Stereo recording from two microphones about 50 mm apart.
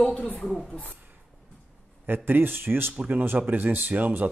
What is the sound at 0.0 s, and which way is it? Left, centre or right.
Speech, left.